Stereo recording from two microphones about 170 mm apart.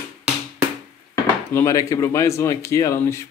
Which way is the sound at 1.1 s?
15° left (ahead or behind).